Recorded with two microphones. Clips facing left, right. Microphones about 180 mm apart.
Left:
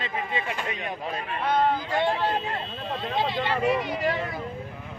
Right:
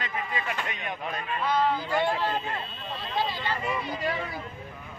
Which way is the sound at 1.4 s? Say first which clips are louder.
Left 2 dB; 55° left (ahead or behind).